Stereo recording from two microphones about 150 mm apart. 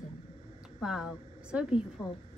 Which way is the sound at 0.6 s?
5° right (ahead or behind).